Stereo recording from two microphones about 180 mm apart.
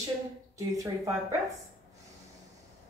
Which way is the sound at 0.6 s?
20° right (ahead or behind).